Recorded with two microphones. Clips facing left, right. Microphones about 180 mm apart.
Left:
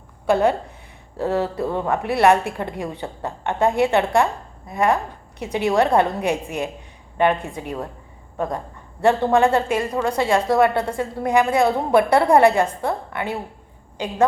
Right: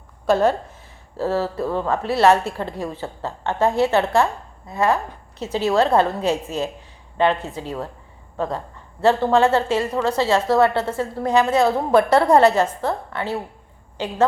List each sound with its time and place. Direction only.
0.3 s a woman's voice: 15° left (ahead or behind)